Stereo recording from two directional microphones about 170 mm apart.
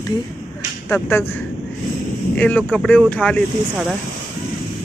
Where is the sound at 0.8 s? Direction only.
10° left (ahead or behind).